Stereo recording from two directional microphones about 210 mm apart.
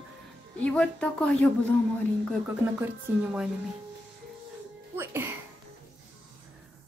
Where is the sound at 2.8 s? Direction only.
5° right (ahead or behind).